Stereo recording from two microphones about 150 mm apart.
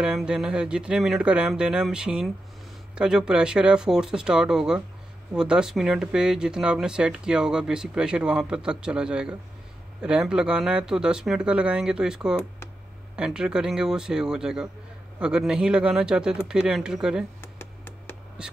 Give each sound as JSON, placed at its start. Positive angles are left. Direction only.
{"t": 0.0, "sound": "speech", "side_deg": -5}
{"t": 17.4, "sound": "computer keyboard", "side_deg": 15}
{"t": 18.4, "sound": "a sound", "side_deg": -5}